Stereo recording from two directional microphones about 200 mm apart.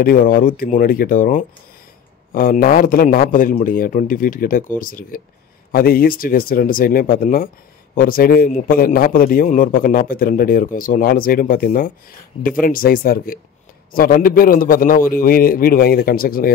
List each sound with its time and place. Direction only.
0.0 s a man's voice: 45° left (ahead or behind)